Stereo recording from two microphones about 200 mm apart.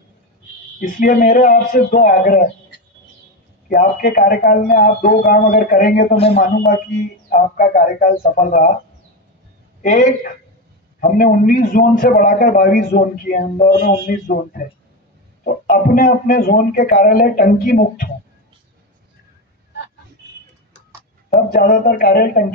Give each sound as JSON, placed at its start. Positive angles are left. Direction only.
{"t": 0.7, "sound": "a man's voice", "side_deg": 40}
{"t": 3.6, "sound": "a man's voice", "side_deg": 45}
{"t": 6.1, "sound": "speech", "side_deg": 30}
{"t": 7.3, "sound": "a man's voice", "side_deg": 40}
{"t": 9.8, "sound": "a man's voice", "side_deg": 40}
{"t": 21.3, "sound": "a man's voice", "side_deg": 50}